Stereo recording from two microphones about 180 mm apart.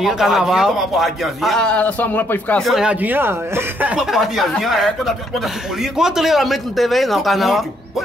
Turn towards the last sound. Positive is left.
turn(degrees=0)  # may be behind; listen again after turning